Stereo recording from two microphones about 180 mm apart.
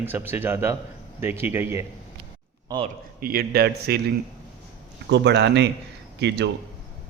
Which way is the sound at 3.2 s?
55° right (ahead or behind).